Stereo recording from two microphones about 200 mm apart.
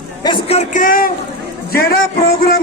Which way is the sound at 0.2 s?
25° left (ahead or behind).